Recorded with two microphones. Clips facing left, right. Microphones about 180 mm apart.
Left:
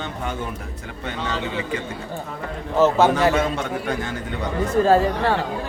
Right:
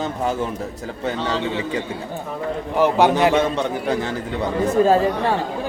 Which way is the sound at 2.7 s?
15° right (ahead or behind).